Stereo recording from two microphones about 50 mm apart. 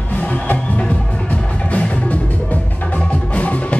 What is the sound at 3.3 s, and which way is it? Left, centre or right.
Music, left.